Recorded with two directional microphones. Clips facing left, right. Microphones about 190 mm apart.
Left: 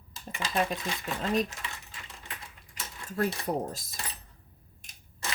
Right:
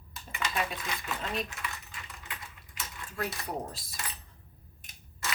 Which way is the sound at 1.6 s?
25° left (ahead or behind).